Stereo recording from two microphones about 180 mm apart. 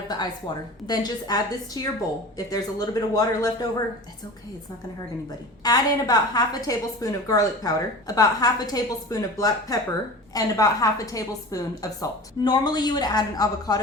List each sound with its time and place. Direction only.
0.1 s a woman's voice: 25° left (ahead or behind)
5.6 s a woman's voice: 20° left (ahead or behind)